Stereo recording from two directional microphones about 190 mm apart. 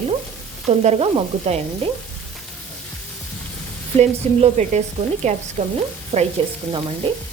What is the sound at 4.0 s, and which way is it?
Frying, 40° right (ahead or behind).